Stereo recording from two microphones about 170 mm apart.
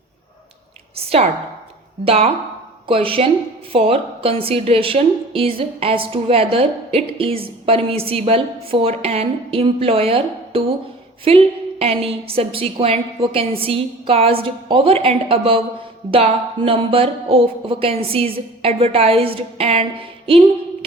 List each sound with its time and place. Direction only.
0.9 s a woman's voice: 35° right (ahead or behind)